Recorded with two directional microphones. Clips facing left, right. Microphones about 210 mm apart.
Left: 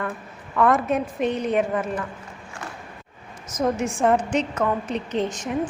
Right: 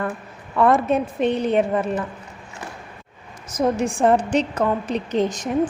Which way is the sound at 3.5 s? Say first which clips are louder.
Right 3 dB; 30° right (ahead or behind).